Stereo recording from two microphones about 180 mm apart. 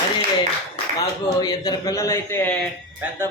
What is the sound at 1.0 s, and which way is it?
A man's voice, 25° left (ahead or behind).